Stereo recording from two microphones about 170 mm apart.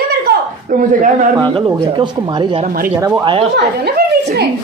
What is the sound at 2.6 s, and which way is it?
Speech, 50° right (ahead or behind).